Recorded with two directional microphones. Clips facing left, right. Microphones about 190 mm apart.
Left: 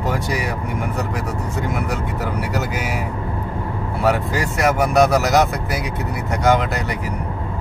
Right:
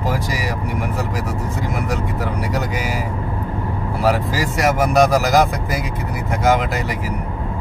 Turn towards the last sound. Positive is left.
turn(degrees=-5)  # may be behind; listen again after turning